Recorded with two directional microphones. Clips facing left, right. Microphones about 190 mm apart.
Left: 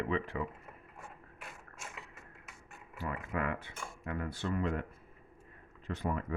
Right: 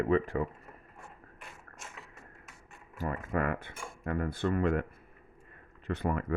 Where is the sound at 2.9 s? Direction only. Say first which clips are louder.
Right 5 dB; 45° right (ahead or behind).